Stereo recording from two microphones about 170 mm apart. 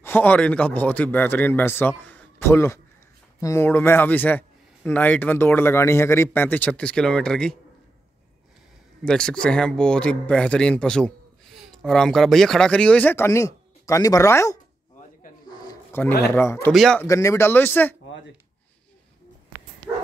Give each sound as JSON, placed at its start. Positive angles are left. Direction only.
{"t": 0.0, "sound": "speech", "side_deg": 10}
{"t": 9.0, "sound": "speech", "side_deg": 5}
{"t": 15.4, "sound": "a sound", "side_deg": 20}
{"t": 16.7, "sound": "speech", "side_deg": 0}
{"t": 17.0, "sound": "speech", "side_deg": 15}